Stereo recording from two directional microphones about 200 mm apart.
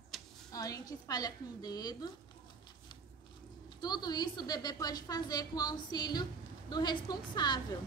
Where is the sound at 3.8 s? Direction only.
20° left (ahead or behind).